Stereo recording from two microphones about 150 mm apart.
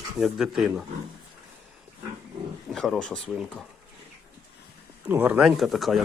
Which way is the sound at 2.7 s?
5° left (ahead or behind).